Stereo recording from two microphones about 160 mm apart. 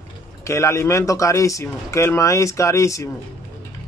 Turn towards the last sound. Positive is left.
turn(degrees=20)  # may be behind; listen again after turning